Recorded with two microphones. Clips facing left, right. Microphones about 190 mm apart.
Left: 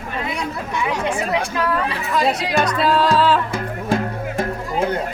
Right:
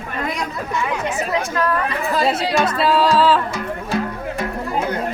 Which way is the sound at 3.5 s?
50° left (ahead or behind).